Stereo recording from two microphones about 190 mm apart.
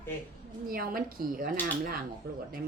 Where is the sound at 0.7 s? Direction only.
50° right (ahead or behind).